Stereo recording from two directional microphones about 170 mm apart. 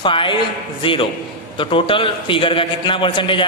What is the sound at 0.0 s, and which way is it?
A man's voice, 30° left (ahead or behind).